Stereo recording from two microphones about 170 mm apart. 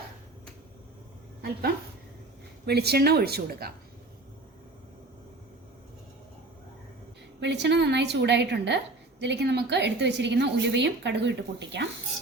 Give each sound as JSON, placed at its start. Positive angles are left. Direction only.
{"t": 1.4, "sound": "a woman's voice", "side_deg": -65}
{"t": 7.3, "sound": "a woman's voice", "side_deg": -90}